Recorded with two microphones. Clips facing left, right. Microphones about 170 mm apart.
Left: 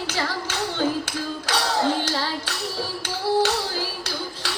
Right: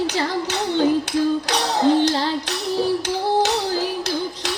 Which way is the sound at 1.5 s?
20° right (ahead or behind).